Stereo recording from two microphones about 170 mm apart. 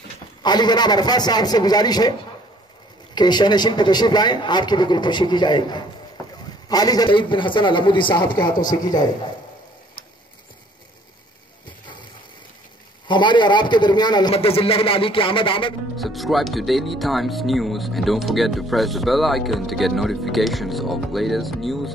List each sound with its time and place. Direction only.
0.4 s speech: 25° left (ahead or behind)
3.2 s speech: 25° left (ahead or behind)
13.1 s a man's voice: 25° left (ahead or behind)
16.0 s speech: centre (ahead or behind)